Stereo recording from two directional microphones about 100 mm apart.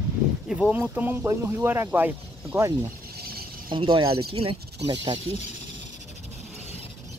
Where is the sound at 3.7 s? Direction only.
55° right (ahead or behind).